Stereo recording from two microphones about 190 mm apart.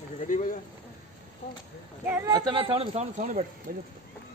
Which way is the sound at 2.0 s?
15° right (ahead or behind).